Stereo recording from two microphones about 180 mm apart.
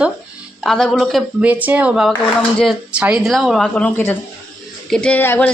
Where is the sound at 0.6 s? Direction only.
Centre (ahead or behind).